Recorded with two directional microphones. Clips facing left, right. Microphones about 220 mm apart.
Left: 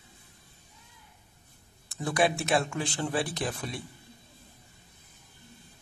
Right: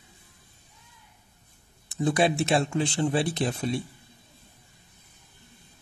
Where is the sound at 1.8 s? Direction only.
20° right (ahead or behind).